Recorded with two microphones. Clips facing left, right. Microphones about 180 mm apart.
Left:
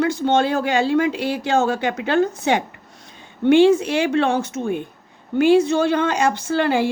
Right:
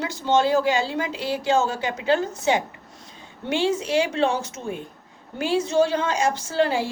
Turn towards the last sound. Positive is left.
turn(degrees=60)  # may be behind; listen again after turning